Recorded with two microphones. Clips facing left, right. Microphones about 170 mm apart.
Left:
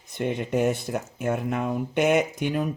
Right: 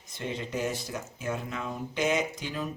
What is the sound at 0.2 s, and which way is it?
Speech, 60° left (ahead or behind).